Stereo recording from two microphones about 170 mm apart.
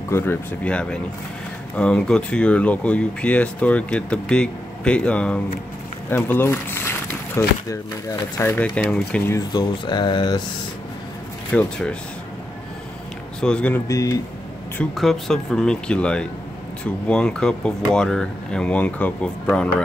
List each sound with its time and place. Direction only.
0.1 s speech: 15° left (ahead or behind)
9.5 s speech: 25° left (ahead or behind)
11.5 s speech: 5° left (ahead or behind)
13.4 s speech: 5° left (ahead or behind)
13.8 s speech: 20° left (ahead or behind)
14.8 s speech: centre (ahead or behind)